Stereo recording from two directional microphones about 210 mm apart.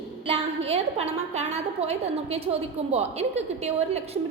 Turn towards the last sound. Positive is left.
turn(degrees=-30)  # may be behind; listen again after turning